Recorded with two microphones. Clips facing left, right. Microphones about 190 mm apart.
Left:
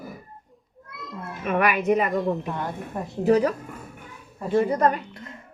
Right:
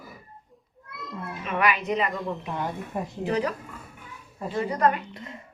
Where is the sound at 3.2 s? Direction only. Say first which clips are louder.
Left 8 dB; 40° left (ahead or behind).